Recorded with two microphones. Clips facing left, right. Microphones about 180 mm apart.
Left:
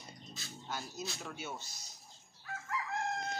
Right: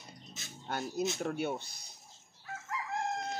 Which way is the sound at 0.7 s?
60° right (ahead or behind).